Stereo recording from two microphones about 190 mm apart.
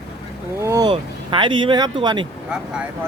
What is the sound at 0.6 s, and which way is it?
Speech, 15° right (ahead or behind).